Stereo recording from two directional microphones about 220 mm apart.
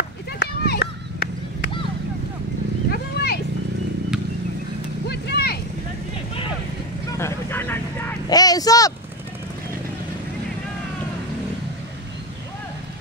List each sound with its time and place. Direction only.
0.4 s run: 45° left (ahead or behind)
2.9 s horse: 45° left (ahead or behind)
5.0 s vehicle: 50° left (ahead or behind)
7.2 s vehicle: 10° left (ahead or behind)
8.3 s a sound: 15° left (ahead or behind)